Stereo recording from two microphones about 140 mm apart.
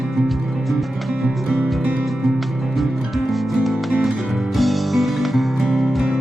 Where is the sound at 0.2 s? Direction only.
Centre (ahead or behind).